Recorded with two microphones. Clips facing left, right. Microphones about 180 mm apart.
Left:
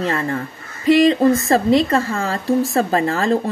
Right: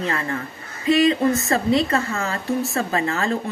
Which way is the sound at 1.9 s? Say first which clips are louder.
Left 4 dB; 30° left (ahead or behind).